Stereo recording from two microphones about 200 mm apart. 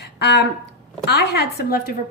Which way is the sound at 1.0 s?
55° left (ahead or behind).